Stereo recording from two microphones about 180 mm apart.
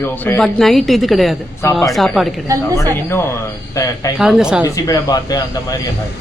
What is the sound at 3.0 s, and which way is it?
A man's voice, 15° left (ahead or behind).